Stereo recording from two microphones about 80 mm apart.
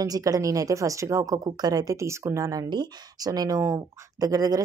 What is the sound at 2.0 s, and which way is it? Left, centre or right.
Speech, right.